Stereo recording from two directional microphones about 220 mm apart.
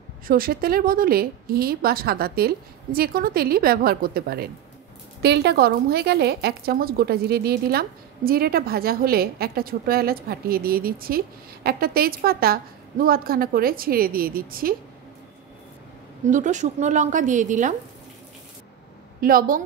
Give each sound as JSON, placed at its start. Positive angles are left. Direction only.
{"t": 0.3, "sound": "a woman's voice", "side_deg": -40}
{"t": 16.3, "sound": "a woman's voice", "side_deg": -35}
{"t": 19.2, "sound": "a woman's voice", "side_deg": -40}